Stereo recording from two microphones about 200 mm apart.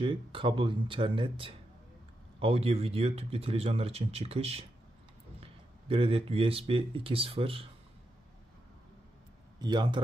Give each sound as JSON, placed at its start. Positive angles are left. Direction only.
{"t": 0.0, "sound": "speech", "side_deg": -25}
{"t": 9.6, "sound": "speech", "side_deg": -20}